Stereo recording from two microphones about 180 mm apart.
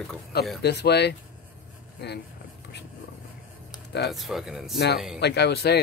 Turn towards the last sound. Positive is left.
turn(degrees=65)  # may be behind; listen again after turning